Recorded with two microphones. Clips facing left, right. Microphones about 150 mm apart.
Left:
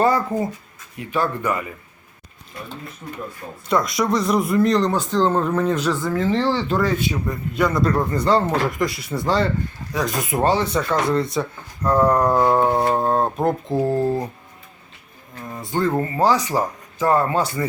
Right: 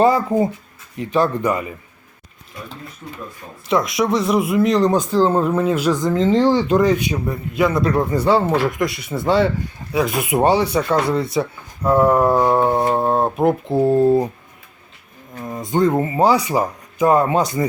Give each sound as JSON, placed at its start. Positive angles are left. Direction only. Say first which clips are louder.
{"t": 0.0, "sound": "speech", "louder": "right 4 dB", "side_deg": -20}
{"t": 3.0, "sound": "speech", "louder": "even", "side_deg": 25}
{"t": 3.7, "sound": "speech", "louder": "right 2 dB", "side_deg": 0}
{"t": 7.5, "sound": "speech", "louder": "right 2 dB", "side_deg": -5}
{"t": 15.4, "sound": "speech", "louder": "right 5 dB", "side_deg": -20}